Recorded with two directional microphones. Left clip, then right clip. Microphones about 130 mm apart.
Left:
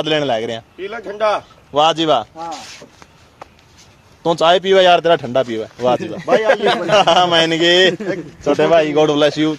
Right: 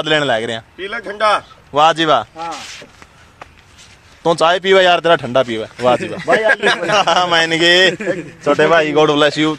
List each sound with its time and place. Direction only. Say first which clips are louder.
0.0 s a man's voice: right 2 dB; 20° right (ahead or behind)
0.7 s a man's voice: right 2 dB; 5° left (ahead or behind)
1.7 s a man's voice: right 2 dB; 25° right (ahead or behind)
4.2 s speech: even; 15° right (ahead or behind)
6.5 s speech: even; 15° left (ahead or behind)
6.9 s a man's voice: left 3 dB; 20° right (ahead or behind)